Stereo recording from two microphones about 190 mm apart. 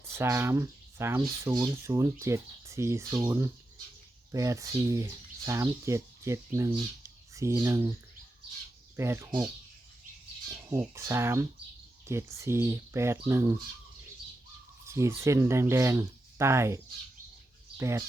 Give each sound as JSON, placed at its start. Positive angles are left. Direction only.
{"t": 0.1, "sound": "speech", "side_deg": -15}
{"t": 9.0, "sound": "speech", "side_deg": -15}
{"t": 10.7, "sound": "speech", "side_deg": -15}
{"t": 14.8, "sound": "speech", "side_deg": -15}